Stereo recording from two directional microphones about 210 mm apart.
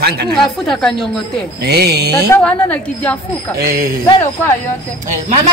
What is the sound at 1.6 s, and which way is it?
Speech, 50° right (ahead or behind).